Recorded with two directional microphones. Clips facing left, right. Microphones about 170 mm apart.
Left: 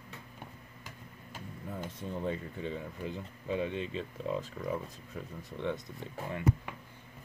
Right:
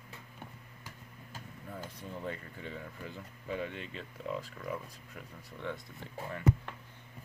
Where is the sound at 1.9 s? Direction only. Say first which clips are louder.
Left 6 dB; 20° left (ahead or behind).